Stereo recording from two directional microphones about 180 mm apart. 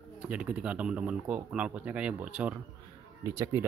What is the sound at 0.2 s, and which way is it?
Speech, 5° right (ahead or behind).